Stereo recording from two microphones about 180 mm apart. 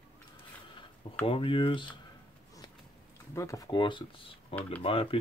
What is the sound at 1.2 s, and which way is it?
Speech, 30° left (ahead or behind).